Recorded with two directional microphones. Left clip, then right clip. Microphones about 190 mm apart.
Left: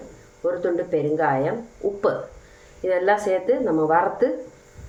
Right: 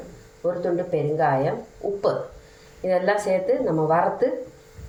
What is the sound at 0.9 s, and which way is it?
Speech, 20° left (ahead or behind).